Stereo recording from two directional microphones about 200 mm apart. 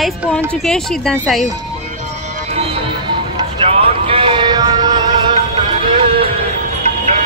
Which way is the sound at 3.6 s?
30° right (ahead or behind).